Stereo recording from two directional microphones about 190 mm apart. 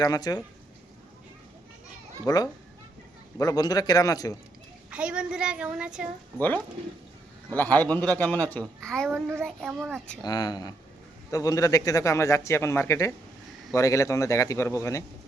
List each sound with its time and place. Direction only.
0.0 s a man's voice: 20° left (ahead or behind)
2.2 s a man's voice: 20° left (ahead or behind)
4.9 s a child's voice: 5° right (ahead or behind)
7.5 s a man's voice: 10° left (ahead or behind)
9.0 s a child's voice: 10° right (ahead or behind)
9.4 s a child's voice: centre (ahead or behind)
10.2 s a man's voice: 20° left (ahead or behind)